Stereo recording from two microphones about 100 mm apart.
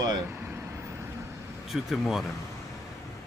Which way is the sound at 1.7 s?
Centre (ahead or behind).